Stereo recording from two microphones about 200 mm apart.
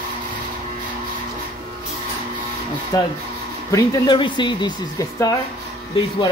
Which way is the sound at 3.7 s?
20° left (ahead or behind).